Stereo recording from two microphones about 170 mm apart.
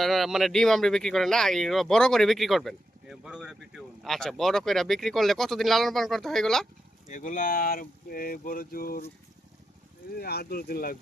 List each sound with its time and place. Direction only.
0.0 s speech: centre (ahead or behind)
7.1 s speech: 50° left (ahead or behind)
10.2 s speech: 70° left (ahead or behind)